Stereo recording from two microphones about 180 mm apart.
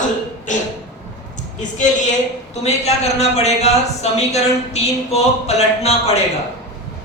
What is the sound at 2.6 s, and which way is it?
Speech, 35° left (ahead or behind).